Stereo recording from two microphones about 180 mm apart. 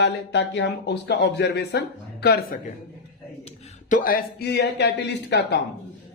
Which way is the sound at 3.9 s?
50° left (ahead or behind).